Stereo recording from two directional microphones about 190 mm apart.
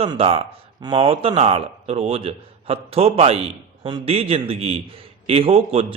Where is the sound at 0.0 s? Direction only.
30° right (ahead or behind).